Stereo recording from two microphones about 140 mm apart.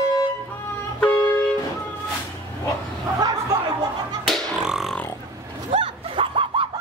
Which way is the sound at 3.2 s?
25° right (ahead or behind).